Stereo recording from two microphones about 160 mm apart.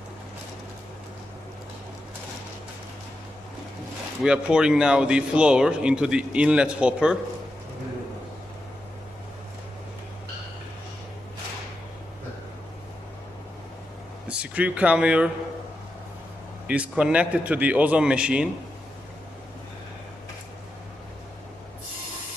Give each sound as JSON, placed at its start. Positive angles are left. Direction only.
{"t": 4.2, "sound": "speech", "side_deg": -5}
{"t": 14.2, "sound": "speech", "side_deg": -10}
{"t": 16.6, "sound": "a man's voice", "side_deg": -5}